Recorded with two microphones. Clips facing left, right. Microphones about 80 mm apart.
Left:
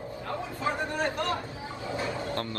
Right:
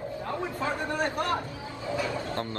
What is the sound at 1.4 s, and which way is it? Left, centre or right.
Speech, left.